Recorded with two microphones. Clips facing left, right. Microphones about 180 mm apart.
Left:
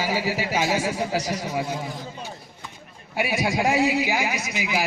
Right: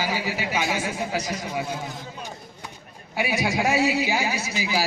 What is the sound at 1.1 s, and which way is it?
Speech, 25° right (ahead or behind).